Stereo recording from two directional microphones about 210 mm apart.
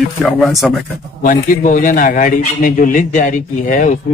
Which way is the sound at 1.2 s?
40° left (ahead or behind).